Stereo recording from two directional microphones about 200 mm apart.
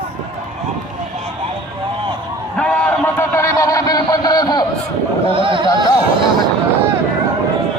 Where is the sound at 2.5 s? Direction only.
5° left (ahead or behind).